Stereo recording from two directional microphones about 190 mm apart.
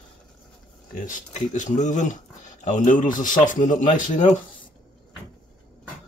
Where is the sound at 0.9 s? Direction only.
40° left (ahead or behind).